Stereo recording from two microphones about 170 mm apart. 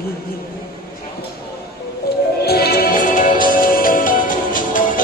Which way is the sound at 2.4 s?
65° left (ahead or behind).